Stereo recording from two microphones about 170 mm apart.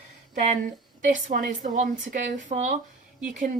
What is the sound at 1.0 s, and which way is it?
A woman's voice, 50° right (ahead or behind).